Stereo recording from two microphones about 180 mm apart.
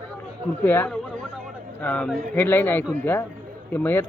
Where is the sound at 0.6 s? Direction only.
10° left (ahead or behind).